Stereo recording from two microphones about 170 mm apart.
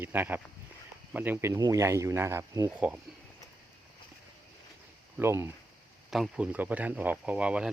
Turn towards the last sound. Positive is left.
turn(degrees=-5)  # may be behind; listen again after turning